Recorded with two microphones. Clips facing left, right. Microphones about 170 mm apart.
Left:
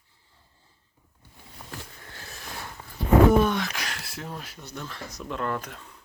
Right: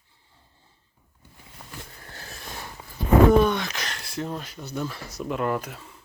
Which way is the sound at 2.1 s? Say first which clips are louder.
Right 2 dB; 35° right (ahead or behind).